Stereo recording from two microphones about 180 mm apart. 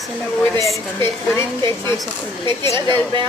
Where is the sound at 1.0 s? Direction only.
15° left (ahead or behind).